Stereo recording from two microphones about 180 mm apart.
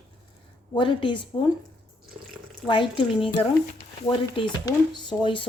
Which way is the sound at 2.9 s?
30° left (ahead or behind).